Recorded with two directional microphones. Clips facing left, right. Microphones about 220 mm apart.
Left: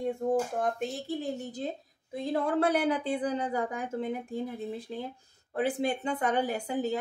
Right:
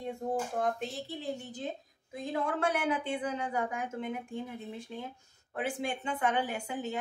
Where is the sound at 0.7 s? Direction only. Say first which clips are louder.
Left 5 dB; 45° left (ahead or behind).